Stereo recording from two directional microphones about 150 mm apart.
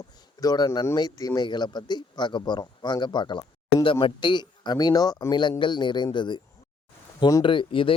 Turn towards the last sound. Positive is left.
turn(degrees=35)  # may be behind; listen again after turning